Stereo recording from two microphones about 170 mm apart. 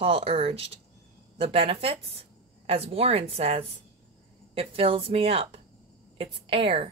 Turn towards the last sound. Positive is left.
turn(degrees=-30)  # may be behind; listen again after turning